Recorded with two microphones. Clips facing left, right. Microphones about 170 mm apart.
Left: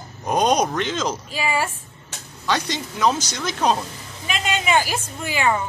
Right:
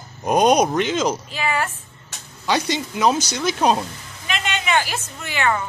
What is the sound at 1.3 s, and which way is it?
Speech, 10° left (ahead or behind).